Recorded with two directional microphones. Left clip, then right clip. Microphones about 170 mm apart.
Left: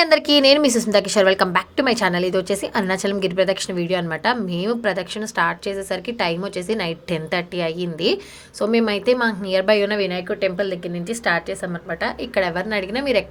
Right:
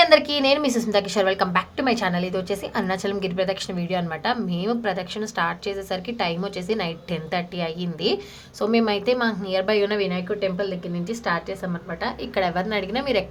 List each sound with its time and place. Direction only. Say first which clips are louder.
0.0 s a woman's voice: left 2 dB; 35° left (ahead or behind); by 13.2 s 15° left (ahead or behind)